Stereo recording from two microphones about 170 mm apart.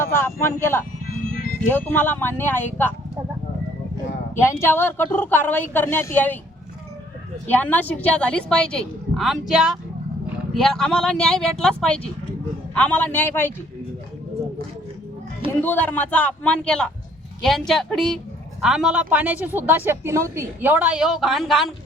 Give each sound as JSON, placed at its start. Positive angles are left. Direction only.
{"t": 0.0, "sound": "a woman's voice", "side_deg": 15}
{"t": 4.4, "sound": "a woman's voice", "side_deg": 15}
{"t": 7.5, "sound": "a woman's voice", "side_deg": 10}
{"t": 15.6, "sound": "a woman's voice", "side_deg": 10}